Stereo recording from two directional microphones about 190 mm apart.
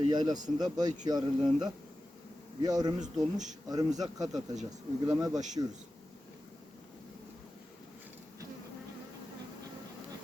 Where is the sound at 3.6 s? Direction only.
20° right (ahead or behind).